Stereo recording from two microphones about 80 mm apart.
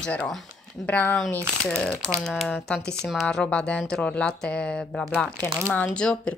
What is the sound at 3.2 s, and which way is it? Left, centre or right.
Speech, centre.